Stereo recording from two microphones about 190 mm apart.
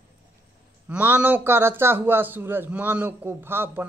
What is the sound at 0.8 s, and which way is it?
A man's voice, 10° right (ahead or behind).